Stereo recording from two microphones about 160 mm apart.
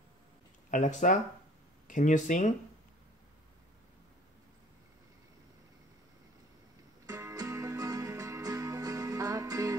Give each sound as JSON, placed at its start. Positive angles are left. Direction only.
{"t": 0.7, "sound": "speech", "side_deg": 50}
{"t": 7.1, "sound": "music", "side_deg": -20}